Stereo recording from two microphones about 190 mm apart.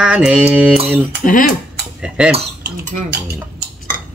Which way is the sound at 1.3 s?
45° left (ahead or behind).